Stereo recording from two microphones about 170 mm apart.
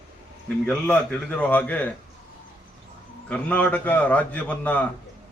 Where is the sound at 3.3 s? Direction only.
10° left (ahead or behind).